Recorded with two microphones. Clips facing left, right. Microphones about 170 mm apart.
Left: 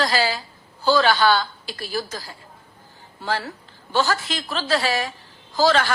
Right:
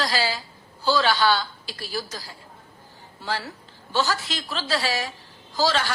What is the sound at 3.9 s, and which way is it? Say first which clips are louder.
A woman's voice: left 3 dB; 55° left (ahead or behind).